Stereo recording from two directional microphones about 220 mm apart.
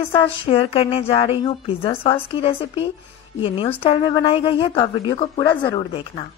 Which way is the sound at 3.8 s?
20° left (ahead or behind).